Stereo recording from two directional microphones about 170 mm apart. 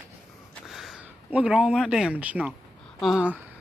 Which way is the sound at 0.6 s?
Centre (ahead or behind).